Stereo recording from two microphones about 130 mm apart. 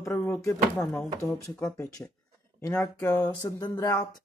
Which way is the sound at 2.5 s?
20° left (ahead or behind).